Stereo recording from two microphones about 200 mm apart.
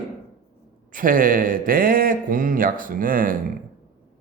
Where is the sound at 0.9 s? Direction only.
45° right (ahead or behind).